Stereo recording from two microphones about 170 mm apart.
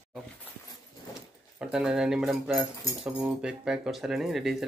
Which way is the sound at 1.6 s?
5° right (ahead or behind).